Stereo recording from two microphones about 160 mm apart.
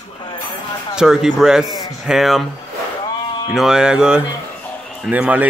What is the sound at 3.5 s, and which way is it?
A man's voice, 5° right (ahead or behind).